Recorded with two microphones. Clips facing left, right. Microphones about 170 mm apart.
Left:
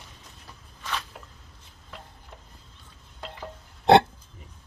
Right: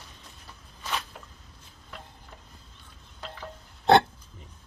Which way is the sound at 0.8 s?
15° right (ahead or behind).